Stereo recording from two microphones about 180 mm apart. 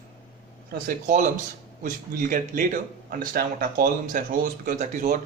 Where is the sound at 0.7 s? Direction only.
50° right (ahead or behind).